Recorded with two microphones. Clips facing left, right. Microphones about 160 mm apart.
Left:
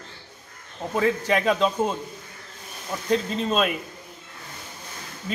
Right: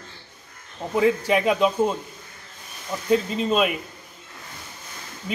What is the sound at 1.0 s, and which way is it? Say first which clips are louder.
Speech: right 3 dB; 10° right (ahead or behind).